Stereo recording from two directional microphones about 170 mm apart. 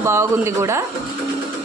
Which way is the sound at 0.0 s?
15° right (ahead or behind).